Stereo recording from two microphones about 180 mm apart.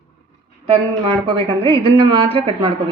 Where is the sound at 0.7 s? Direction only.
30° right (ahead or behind).